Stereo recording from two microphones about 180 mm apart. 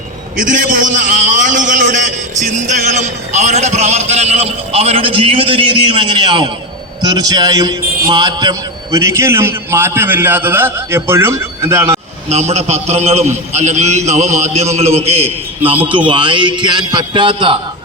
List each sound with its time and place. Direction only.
0.4 s a man's voice: 45° right (ahead or behind); by 11.9 s 15° right (ahead or behind)
11.9 s a man's voice: 35° right (ahead or behind)